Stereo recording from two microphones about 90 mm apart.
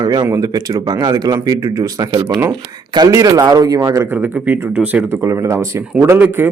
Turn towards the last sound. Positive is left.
turn(degrees=-25)  # may be behind; listen again after turning